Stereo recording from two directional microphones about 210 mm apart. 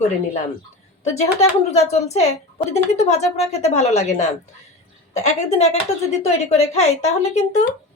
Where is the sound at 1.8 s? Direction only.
30° left (ahead or behind).